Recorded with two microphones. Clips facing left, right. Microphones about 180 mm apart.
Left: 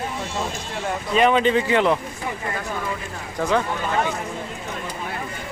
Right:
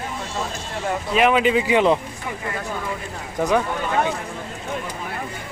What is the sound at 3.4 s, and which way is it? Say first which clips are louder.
Speech: right 2 dB; 15° right (ahead or behind).